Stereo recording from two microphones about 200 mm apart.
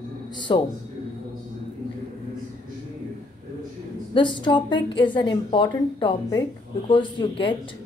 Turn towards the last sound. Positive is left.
turn(degrees=25)  # may be behind; listen again after turning